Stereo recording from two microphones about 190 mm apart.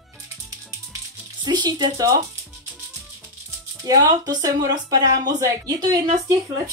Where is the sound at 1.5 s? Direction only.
20° right (ahead or behind).